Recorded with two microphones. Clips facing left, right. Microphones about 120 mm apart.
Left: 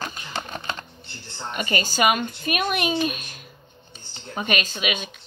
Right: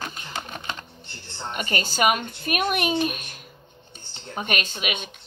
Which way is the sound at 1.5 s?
55° right (ahead or behind).